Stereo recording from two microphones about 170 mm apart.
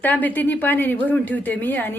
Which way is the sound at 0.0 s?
10° left (ahead or behind).